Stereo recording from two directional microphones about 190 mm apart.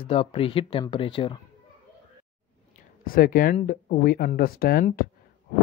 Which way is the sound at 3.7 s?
50° left (ahead or behind).